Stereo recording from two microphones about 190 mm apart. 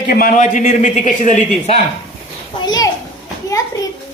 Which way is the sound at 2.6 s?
20° left (ahead or behind).